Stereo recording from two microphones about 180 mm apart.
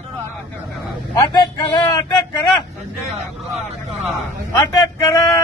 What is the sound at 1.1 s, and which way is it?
Speech, 20° left (ahead or behind).